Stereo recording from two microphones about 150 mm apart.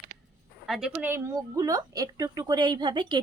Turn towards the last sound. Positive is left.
turn(degrees=-30)  # may be behind; listen again after turning